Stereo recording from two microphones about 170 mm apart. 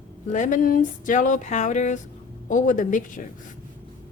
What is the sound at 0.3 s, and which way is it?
A woman's voice, 45° left (ahead or behind).